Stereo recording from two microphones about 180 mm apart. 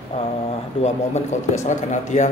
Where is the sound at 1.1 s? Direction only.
40° left (ahead or behind).